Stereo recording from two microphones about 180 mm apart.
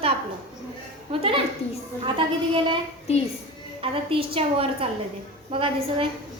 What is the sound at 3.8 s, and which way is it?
A woman's voice, 30° right (ahead or behind).